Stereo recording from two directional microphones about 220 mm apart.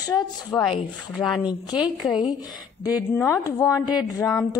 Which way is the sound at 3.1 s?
15° left (ahead or behind).